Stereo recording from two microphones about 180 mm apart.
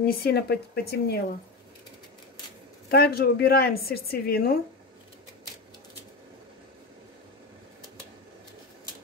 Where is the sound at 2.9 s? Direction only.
60° left (ahead or behind).